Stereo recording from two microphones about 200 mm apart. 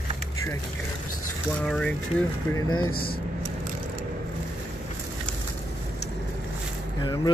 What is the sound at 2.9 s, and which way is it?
Speech, 50° left (ahead or behind).